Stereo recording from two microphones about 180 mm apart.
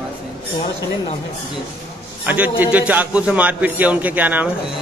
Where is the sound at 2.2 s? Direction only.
10° right (ahead or behind).